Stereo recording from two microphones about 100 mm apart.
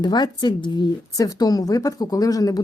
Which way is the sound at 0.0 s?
45° left (ahead or behind).